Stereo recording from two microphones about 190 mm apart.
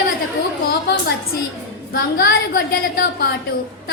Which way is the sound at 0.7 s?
60° left (ahead or behind).